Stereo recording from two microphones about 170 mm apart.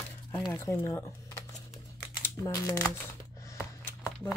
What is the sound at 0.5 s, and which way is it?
Speech, 15° left (ahead or behind).